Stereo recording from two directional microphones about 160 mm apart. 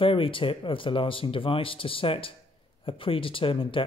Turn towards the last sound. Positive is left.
turn(degrees=35)  # may be behind; listen again after turning